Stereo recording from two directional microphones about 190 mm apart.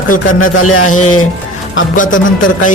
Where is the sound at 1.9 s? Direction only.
45° left (ahead or behind).